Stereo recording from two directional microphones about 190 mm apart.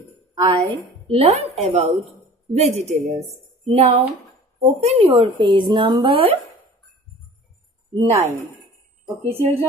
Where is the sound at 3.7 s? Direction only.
35° right (ahead or behind).